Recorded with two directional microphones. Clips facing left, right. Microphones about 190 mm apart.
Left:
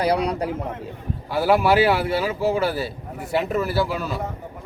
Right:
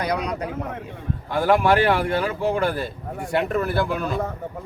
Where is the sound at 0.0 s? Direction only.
30° left (ahead or behind).